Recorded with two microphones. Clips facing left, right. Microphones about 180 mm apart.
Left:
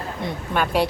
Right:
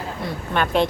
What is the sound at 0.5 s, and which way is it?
Speech, 5° left (ahead or behind).